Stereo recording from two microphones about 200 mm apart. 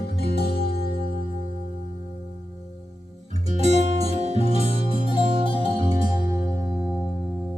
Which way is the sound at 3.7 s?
35° right (ahead or behind).